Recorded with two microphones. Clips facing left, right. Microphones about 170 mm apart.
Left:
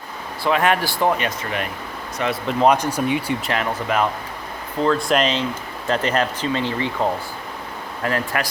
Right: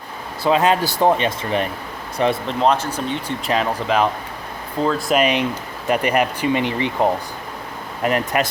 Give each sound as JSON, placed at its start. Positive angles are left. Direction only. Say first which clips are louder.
{"t": 0.4, "sound": "speech", "louder": "right 2 dB", "side_deg": -20}
{"t": 2.5, "sound": "speech", "louder": "left 1 dB", "side_deg": 5}
{"t": 3.5, "sound": "speech", "louder": "right 5 dB", "side_deg": -20}
{"t": 4.8, "sound": "speech", "louder": "right 1 dB", "side_deg": 0}